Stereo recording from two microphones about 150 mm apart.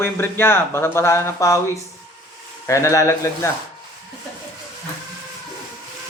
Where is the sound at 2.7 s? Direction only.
20° left (ahead or behind).